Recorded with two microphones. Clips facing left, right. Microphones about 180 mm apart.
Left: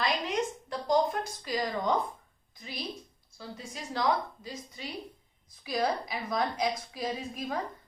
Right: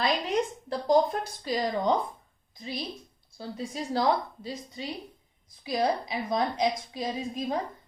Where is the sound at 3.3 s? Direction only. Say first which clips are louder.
Right 7 dB; 35° right (ahead or behind).